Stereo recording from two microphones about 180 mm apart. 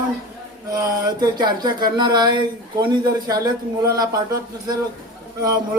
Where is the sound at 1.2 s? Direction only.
25° right (ahead or behind).